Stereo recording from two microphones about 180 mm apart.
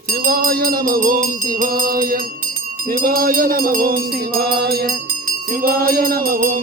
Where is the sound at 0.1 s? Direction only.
55° right (ahead or behind).